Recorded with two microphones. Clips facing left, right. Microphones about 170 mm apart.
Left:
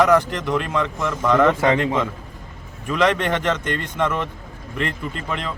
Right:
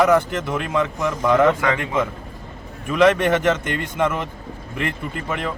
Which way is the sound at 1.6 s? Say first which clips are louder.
Left 4 dB; 30° left (ahead or behind).